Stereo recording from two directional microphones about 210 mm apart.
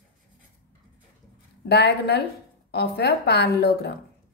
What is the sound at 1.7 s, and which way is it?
A woman's voice, 50° left (ahead or behind).